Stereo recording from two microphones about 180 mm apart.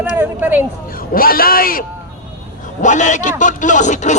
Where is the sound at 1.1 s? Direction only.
55° left (ahead or behind).